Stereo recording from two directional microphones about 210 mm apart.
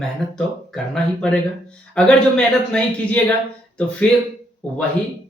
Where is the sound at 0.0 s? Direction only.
Centre (ahead or behind).